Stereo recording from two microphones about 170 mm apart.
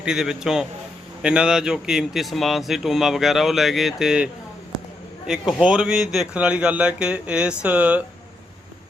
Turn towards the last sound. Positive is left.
turn(degrees=-10)  # may be behind; listen again after turning